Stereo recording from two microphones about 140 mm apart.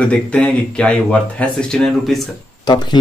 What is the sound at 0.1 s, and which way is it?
Speech, 10° left (ahead or behind).